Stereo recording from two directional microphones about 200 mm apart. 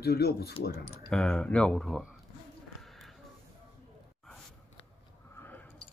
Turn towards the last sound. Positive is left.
turn(degrees=10)  # may be behind; listen again after turning